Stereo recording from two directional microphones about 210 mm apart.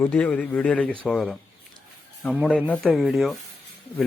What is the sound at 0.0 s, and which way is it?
Speech, 5° left (ahead or behind).